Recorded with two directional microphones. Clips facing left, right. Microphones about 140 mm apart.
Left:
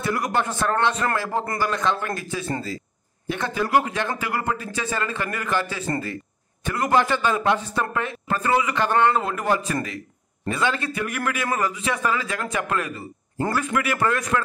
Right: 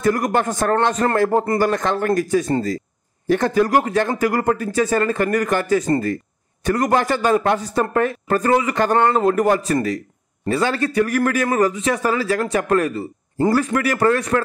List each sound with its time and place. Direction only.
0.0 s a man's voice: 45° right (ahead or behind)